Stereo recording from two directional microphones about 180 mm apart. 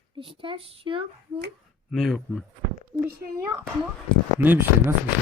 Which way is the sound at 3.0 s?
15° right (ahead or behind).